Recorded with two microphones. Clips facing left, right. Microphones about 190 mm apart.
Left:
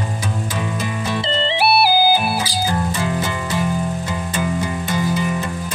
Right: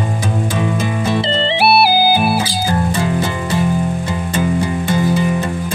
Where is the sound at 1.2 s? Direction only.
70° right (ahead or behind).